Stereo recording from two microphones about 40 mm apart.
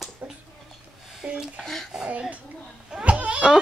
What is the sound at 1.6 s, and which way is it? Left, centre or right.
Speech, centre.